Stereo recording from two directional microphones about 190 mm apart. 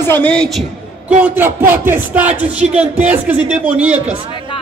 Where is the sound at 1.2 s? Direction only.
10° right (ahead or behind).